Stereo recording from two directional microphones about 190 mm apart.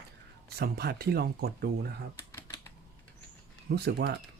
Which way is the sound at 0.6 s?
55° right (ahead or behind).